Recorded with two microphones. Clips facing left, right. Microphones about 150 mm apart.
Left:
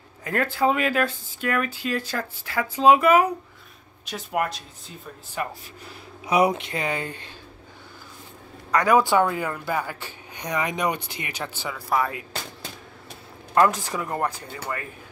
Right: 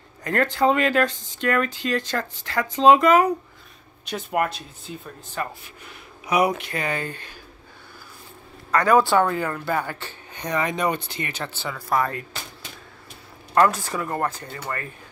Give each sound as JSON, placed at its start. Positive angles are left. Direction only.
{"t": 0.2, "sound": "speech", "side_deg": 5}
{"t": 5.4, "sound": "speech", "side_deg": 15}
{"t": 5.9, "sound": "speech", "side_deg": 25}
{"t": 8.7, "sound": "speech", "side_deg": 15}
{"t": 13.7, "sound": "speech", "side_deg": 15}